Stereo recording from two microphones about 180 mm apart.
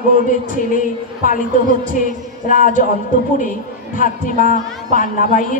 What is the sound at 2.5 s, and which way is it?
Speech, 50° left (ahead or behind).